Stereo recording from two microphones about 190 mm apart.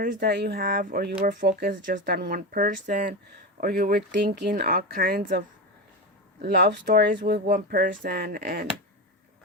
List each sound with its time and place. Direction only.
0.0 s speech: 55° right (ahead or behind)
6.4 s speech: 60° right (ahead or behind)